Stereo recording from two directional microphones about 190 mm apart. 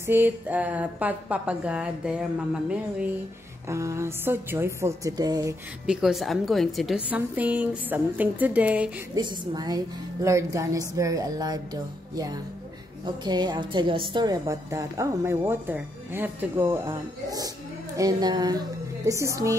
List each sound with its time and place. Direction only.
0.0 s a woman's voice: 10° right (ahead or behind)
3.6 s a woman's voice: 15° right (ahead or behind)
5.9 s a woman's voice: 5° right (ahead or behind)
9.1 s a woman's voice: 20° right (ahead or behind)